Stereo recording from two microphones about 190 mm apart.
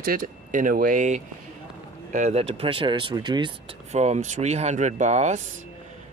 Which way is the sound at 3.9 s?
35° right (ahead or behind).